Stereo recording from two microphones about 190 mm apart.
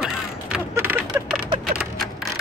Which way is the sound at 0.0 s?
10° right (ahead or behind).